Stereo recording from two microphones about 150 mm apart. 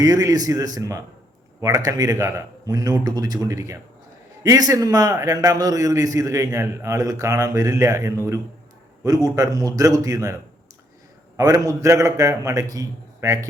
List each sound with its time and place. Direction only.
0.0 s a man's voice: 25° right (ahead or behind)
11.3 s a man's voice: 25° right (ahead or behind)